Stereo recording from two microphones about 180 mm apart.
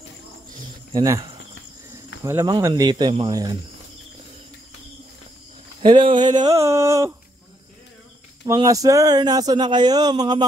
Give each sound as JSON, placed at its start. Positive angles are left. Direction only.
{"t": 0.9, "sound": "speech", "side_deg": -20}
{"t": 5.8, "sound": "speech", "side_deg": -25}
{"t": 6.4, "sound": "a sound", "side_deg": -15}
{"t": 8.5, "sound": "speech", "side_deg": -20}